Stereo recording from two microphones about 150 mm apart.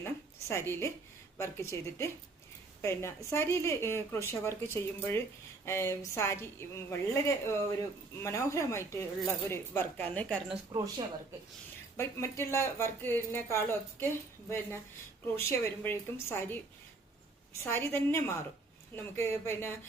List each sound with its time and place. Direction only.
0.0 s a sound: 15° left (ahead or behind)
1.4 s a woman's voice: 20° left (ahead or behind)
10.5 s speech: 30° right (ahead or behind)
11.9 s speech: 15° left (ahead or behind)
15.4 s speech: 15° left (ahead or behind)
17.7 s speech: 15° left (ahead or behind)